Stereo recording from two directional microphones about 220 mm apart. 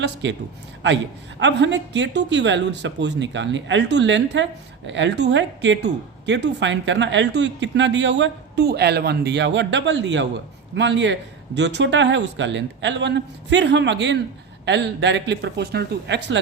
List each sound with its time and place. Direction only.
0.0 s a man's voice: 55° right (ahead or behind)
1.4 s a man's voice: 55° right (ahead or behind)